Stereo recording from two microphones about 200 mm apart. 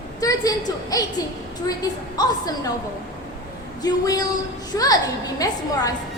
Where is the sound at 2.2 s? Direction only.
20° left (ahead or behind).